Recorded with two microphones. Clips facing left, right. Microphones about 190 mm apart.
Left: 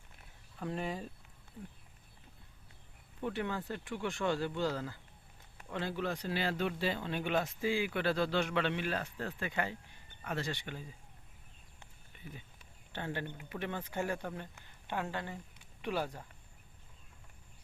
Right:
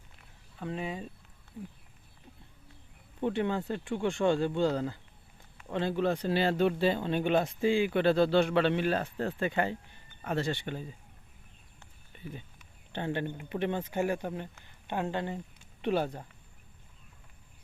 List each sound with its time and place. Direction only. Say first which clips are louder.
0.6 s speech: right 2 dB; centre (ahead or behind)
3.2 s speech: right 7 dB; 25° right (ahead or behind)
12.1 s a sound: right 7 dB; 30° right (ahead or behind)
12.9 s speech: right 7 dB; 25° right (ahead or behind)
13.9 s speech: right 6 dB; 15° right (ahead or behind)